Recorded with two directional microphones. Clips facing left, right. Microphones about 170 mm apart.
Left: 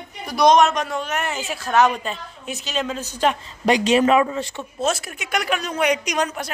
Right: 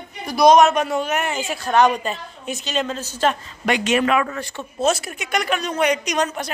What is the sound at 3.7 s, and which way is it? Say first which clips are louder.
Speech: left 3 dB; 35° left (ahead or behind).